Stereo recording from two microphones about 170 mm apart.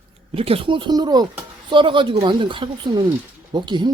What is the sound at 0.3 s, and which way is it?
Speech, 35° right (ahead or behind).